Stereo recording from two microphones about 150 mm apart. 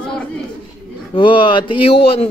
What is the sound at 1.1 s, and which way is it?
Speech, 35° left (ahead or behind).